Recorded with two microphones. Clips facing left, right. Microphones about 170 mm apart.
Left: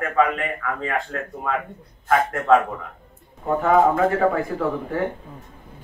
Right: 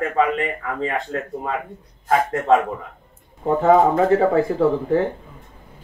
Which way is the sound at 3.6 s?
30° right (ahead or behind).